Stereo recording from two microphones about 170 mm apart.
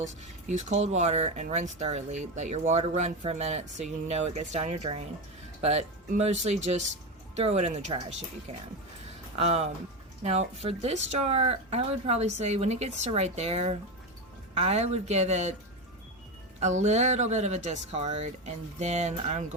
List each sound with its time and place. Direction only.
0.0 s speech: 45° right (ahead or behind)
9.4 s speech: 40° right (ahead or behind)
16.6 s speech: 40° right (ahead or behind)